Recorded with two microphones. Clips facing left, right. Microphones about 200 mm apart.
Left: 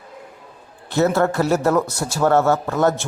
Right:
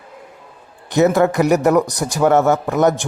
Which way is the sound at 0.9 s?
15° right (ahead or behind).